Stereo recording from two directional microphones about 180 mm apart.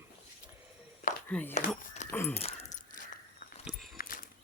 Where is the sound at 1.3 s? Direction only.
10° left (ahead or behind).